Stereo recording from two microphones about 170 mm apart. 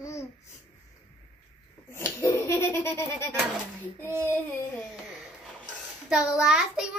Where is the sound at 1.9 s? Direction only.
15° left (ahead or behind).